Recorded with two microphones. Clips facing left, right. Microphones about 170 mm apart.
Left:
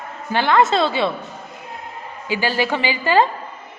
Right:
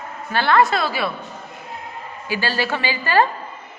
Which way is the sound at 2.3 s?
15° left (ahead or behind).